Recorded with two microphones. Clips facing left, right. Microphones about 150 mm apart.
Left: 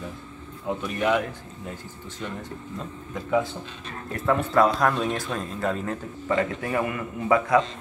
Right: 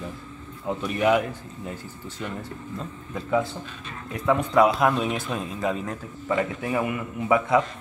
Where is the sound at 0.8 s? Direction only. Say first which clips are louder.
Right 3 dB; 10° right (ahead or behind).